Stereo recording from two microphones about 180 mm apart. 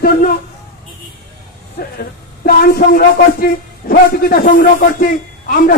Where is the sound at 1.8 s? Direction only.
55° left (ahead or behind).